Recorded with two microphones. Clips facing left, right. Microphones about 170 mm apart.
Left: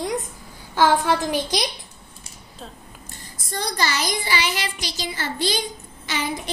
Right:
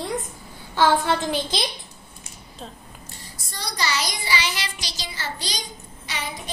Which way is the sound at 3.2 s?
50° left (ahead or behind).